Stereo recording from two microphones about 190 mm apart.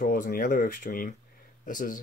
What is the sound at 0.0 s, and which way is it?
Speech, 50° left (ahead or behind).